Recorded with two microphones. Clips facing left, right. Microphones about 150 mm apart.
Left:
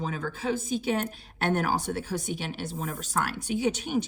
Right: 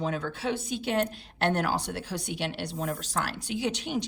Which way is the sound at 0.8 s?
50° left (ahead or behind).